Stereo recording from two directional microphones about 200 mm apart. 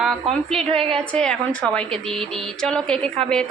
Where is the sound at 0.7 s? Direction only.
30° right (ahead or behind).